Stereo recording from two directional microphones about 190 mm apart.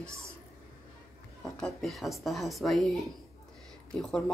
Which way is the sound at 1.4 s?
Centre (ahead or behind).